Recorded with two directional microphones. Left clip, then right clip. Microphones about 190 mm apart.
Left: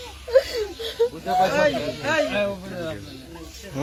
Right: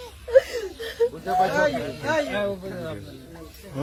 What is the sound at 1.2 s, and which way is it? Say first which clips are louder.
Speech: left 2 dB; 25° right (ahead or behind).